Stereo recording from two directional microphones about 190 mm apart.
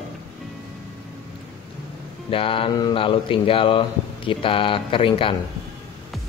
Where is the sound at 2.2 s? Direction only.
30° left (ahead or behind).